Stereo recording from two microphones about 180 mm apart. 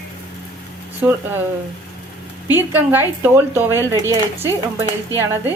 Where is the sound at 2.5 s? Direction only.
10° right (ahead or behind).